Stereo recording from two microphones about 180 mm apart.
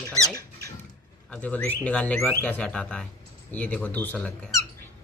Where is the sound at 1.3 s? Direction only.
10° left (ahead or behind).